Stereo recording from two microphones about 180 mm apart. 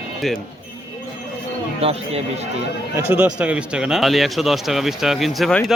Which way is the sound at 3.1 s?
10° right (ahead or behind).